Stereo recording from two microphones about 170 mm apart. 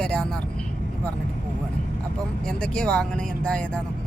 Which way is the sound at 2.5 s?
5° left (ahead or behind).